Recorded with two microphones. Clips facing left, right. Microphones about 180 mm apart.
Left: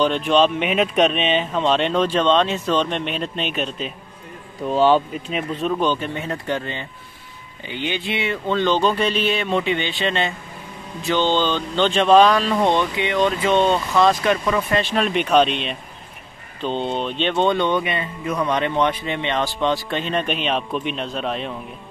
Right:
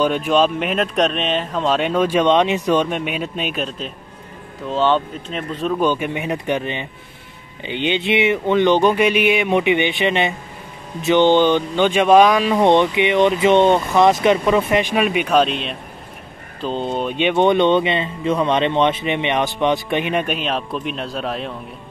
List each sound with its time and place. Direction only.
0.0 s speech: 5° right (ahead or behind)
5.9 s speech: 15° right (ahead or behind)